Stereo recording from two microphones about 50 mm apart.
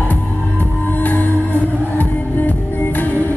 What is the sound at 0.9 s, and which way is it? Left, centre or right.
Music, left.